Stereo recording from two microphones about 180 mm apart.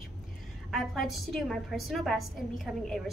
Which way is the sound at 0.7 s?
Centre (ahead or behind).